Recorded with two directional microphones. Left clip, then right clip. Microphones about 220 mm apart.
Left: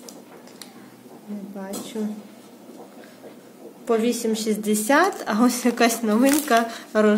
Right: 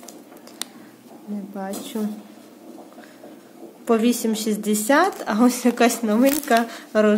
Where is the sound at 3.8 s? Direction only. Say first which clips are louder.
Right 1 dB; 15° right (ahead or behind).